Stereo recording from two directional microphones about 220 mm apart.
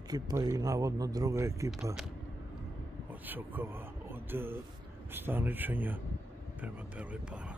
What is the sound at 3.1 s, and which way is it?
Speech, 10° right (ahead or behind).